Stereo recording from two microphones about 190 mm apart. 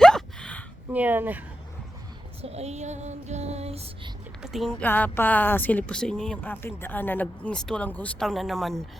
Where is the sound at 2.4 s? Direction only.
35° right (ahead or behind).